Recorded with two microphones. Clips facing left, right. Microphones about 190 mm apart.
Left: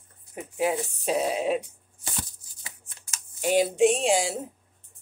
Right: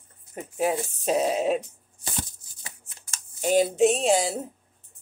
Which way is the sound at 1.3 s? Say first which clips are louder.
Right 2 dB; 45° right (ahead or behind).